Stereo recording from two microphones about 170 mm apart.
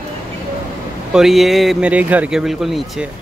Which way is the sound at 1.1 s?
Centre (ahead or behind).